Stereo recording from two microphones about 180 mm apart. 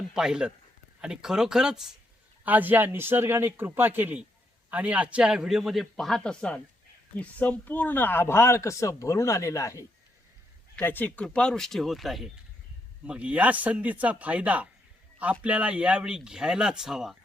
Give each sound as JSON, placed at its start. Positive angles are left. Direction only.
{"t": 0.1, "sound": "a man's voice", "side_deg": -5}